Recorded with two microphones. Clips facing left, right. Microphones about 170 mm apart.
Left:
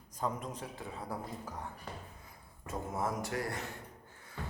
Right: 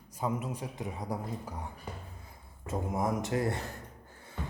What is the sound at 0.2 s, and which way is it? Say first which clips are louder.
Speech: right 3 dB; 10° right (ahead or behind).